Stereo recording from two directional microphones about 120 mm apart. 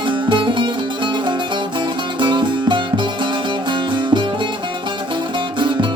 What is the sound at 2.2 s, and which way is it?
Music, 40° right (ahead or behind).